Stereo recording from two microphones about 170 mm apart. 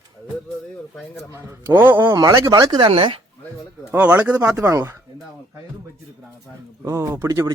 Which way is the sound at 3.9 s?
10° right (ahead or behind).